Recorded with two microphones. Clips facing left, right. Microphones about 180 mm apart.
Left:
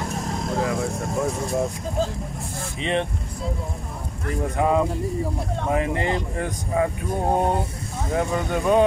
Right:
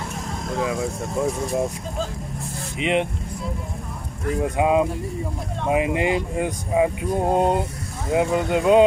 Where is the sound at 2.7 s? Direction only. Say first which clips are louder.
Right 3 dB; 15° right (ahead or behind).